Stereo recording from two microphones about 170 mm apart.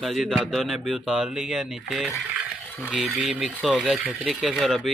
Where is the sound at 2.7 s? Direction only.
5° left (ahead or behind).